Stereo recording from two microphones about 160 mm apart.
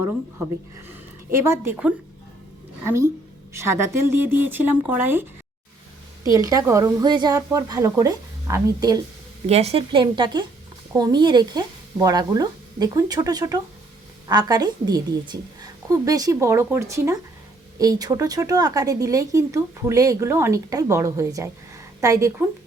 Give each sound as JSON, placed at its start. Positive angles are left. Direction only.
{"t": 0.9, "sound": "speech", "side_deg": -15}
{"t": 6.3, "sound": "speech", "side_deg": -20}
{"t": 9.5, "sound": "a woman's voice", "side_deg": -40}